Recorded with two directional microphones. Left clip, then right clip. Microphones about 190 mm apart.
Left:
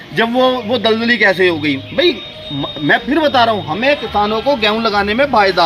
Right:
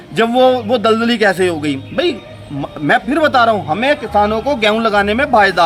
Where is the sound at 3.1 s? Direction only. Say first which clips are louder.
Right 2 dB; 20° right (ahead or behind).